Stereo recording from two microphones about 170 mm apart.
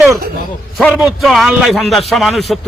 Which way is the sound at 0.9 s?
Centre (ahead or behind).